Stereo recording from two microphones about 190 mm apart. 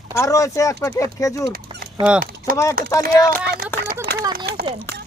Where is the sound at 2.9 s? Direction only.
15° left (ahead or behind).